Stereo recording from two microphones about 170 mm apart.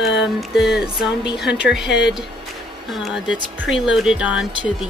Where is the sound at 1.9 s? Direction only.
90° left.